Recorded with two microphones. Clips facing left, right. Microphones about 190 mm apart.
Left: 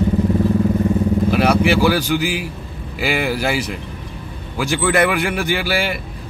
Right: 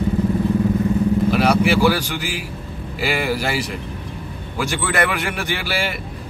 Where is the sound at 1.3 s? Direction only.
Centre (ahead or behind).